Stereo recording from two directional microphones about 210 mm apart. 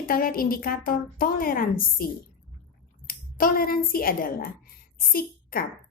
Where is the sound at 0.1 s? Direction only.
45° left (ahead or behind).